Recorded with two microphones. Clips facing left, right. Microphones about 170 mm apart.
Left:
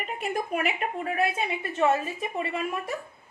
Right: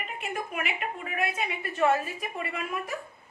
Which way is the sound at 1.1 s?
25° left (ahead or behind).